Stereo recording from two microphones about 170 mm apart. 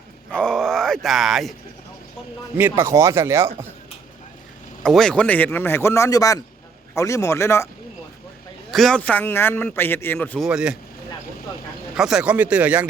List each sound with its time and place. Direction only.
0.3 s speech: 5° left (ahead or behind)
2.6 s speech: 15° right (ahead or behind)
4.8 s a man's voice: 5° left (ahead or behind)
8.7 s a man's voice: centre (ahead or behind)
10.4 s speech: 5° right (ahead or behind)
11.9 s speech: 5° right (ahead or behind)